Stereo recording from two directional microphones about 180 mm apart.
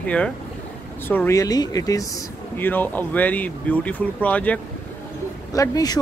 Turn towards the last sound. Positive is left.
turn(degrees=20)  # may be behind; listen again after turning